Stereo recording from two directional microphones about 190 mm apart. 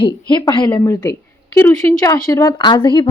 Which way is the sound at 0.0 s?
25° left (ahead or behind).